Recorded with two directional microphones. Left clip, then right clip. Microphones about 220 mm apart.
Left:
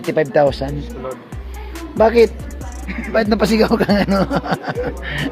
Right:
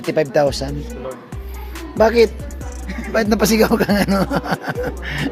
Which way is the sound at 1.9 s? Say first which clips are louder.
Left 1 dB; 5° left (ahead or behind).